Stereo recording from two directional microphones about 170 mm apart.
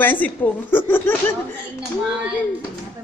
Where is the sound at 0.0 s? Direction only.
10° left (ahead or behind).